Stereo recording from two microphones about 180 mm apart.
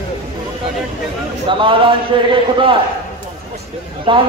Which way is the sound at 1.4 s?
25° right (ahead or behind).